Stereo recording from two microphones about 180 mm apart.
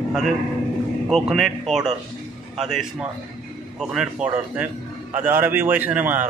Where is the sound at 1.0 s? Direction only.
Centre (ahead or behind).